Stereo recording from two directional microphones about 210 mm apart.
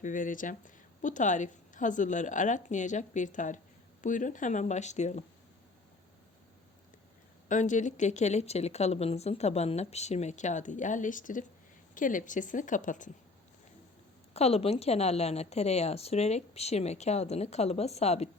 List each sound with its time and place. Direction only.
0.0 s speech: 40° left (ahead or behind)
7.4 s speech: 35° left (ahead or behind)
14.3 s speech: 30° left (ahead or behind)